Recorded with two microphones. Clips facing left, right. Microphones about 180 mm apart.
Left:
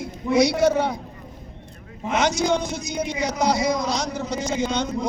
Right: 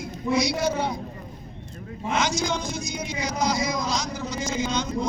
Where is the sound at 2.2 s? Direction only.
60° left (ahead or behind).